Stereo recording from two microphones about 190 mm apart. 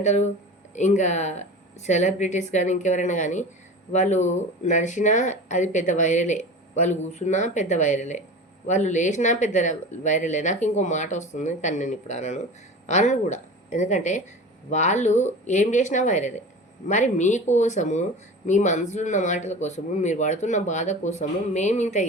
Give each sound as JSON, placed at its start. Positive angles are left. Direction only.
{"t": 0.0, "sound": "a woman's voice", "side_deg": 35}